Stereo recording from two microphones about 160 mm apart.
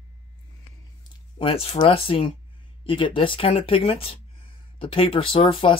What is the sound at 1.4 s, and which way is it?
Speech, 35° left (ahead or behind).